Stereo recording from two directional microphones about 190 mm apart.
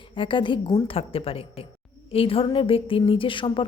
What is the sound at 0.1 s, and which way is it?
A woman's voice, 25° left (ahead or behind).